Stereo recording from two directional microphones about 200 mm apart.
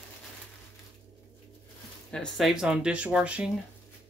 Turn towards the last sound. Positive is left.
turn(degrees=-5)  # may be behind; listen again after turning